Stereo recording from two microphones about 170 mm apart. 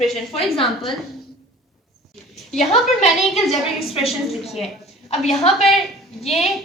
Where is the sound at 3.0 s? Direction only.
Centre (ahead or behind).